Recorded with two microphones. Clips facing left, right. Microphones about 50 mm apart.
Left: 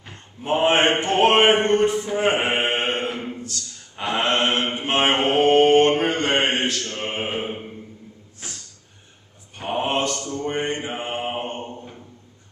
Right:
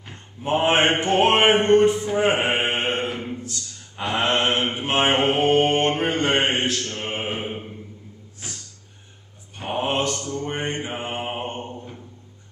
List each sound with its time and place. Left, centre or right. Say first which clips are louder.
0.0 s mantra: right 3 dB; centre
2.6 s mantra: left 1 dB; centre
3.1 s a sound: even; centre
3.9 s mantra: even; centre
6.4 s music: even; centre
7.0 s mantra: left 1 dB; centre
9.6 s mantra: left 1 dB; centre
9.8 s mantra: even; centre
10.1 s a sound: left 2 dB; centre
11.1 s mantra: left 3 dB; centre
11.4 s a sound: even; centre